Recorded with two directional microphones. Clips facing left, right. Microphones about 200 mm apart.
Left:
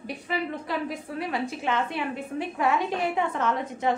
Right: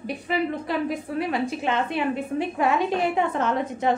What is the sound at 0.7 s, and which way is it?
A woman's voice, 20° right (ahead or behind).